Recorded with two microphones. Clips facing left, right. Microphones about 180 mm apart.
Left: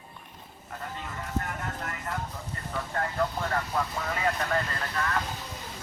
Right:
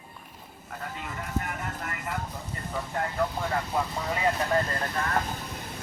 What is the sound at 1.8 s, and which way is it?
Vehicle, 5° right (ahead or behind).